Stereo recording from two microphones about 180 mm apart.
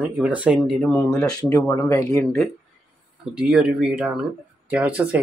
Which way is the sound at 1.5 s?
15° left (ahead or behind).